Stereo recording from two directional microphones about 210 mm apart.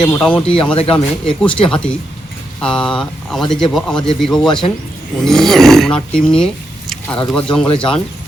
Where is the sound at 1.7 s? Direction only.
5° left (ahead or behind).